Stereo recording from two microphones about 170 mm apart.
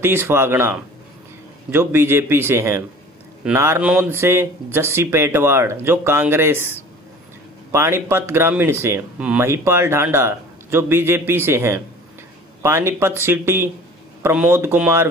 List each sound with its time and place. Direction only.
0.0 s speech: 15° right (ahead or behind)